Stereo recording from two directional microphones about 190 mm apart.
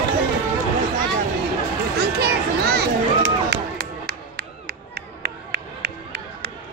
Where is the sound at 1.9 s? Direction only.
60° right (ahead or behind).